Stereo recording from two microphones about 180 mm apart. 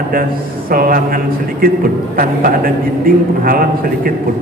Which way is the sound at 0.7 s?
55° right (ahead or behind).